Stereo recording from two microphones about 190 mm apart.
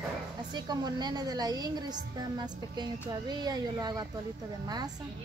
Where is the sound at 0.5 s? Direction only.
20° right (ahead or behind).